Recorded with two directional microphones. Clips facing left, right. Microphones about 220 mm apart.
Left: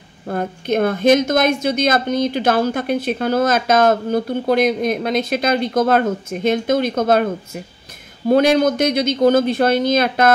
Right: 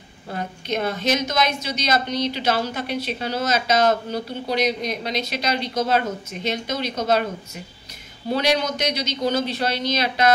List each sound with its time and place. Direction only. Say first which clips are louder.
0.3 s a woman's voice: left 7 dB; 50° left (ahead or behind)
8.3 s a woman's voice: left 8 dB; 50° left (ahead or behind)